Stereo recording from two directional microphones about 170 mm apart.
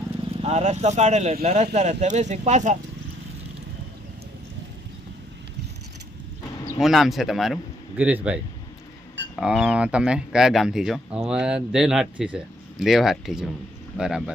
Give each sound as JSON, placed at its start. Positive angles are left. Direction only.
{"t": 0.4, "sound": "speech", "side_deg": -40}
{"t": 6.8, "sound": "a man's voice", "side_deg": 0}